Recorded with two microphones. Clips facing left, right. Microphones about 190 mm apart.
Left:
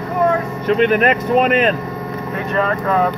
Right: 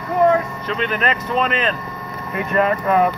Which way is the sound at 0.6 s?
45° left (ahead or behind).